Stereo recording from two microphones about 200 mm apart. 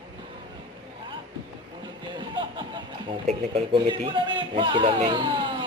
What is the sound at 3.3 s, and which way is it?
Speech, 30° right (ahead or behind).